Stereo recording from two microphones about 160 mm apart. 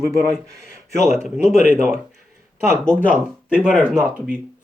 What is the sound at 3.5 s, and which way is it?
Speech, 10° right (ahead or behind).